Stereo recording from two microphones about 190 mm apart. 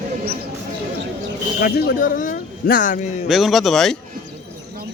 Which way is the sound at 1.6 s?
55° left (ahead or behind).